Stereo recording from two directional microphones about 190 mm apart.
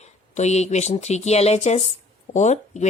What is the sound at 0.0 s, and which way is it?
A woman's voice, 35° left (ahead or behind).